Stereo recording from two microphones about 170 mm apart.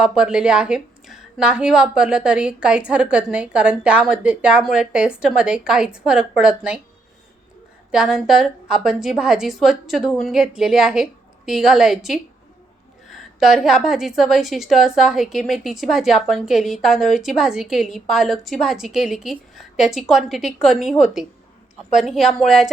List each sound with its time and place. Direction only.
0.0 s a woman's voice: 5° right (ahead or behind)
7.9 s a woman's voice: 5° right (ahead or behind)
13.4 s a woman's voice: centre (ahead or behind)